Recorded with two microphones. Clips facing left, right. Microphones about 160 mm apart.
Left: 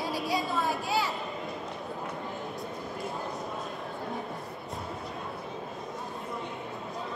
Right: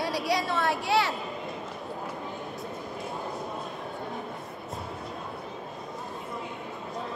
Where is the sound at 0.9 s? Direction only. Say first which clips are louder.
Right 5 dB; 75° right (ahead or behind).